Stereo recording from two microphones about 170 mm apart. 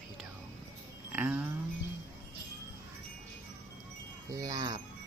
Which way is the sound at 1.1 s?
10° right (ahead or behind).